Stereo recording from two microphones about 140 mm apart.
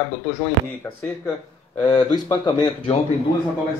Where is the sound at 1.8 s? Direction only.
30° left (ahead or behind).